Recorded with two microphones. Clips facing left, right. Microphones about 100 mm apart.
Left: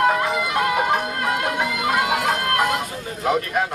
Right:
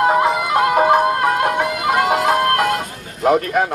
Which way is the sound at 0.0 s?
30° right (ahead or behind).